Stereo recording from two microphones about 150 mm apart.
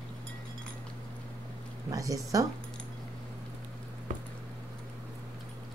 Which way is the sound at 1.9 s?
20° right (ahead or behind).